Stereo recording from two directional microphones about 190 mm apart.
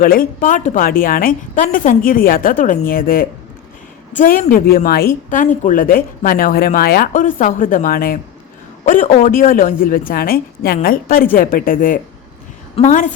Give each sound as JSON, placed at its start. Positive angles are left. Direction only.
{"t": 0.0, "sound": "a woman's voice", "side_deg": 50}